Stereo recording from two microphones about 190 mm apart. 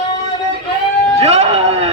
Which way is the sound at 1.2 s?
30° right (ahead or behind).